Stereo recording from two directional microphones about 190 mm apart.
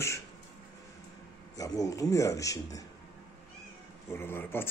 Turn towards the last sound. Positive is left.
turn(degrees=10)  # may be behind; listen again after turning